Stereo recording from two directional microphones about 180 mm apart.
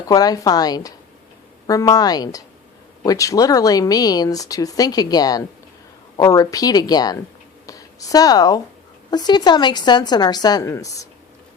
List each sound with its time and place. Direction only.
0.1 s speech: 20° left (ahead or behind)